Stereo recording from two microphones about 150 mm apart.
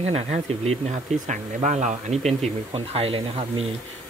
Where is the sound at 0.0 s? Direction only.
45° right (ahead or behind).